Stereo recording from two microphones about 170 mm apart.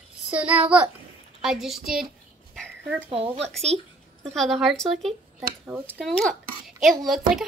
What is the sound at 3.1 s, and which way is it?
Speech, 35° right (ahead or behind).